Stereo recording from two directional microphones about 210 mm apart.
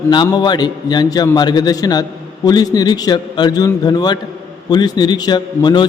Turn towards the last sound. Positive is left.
turn(degrees=20)  # may be behind; listen again after turning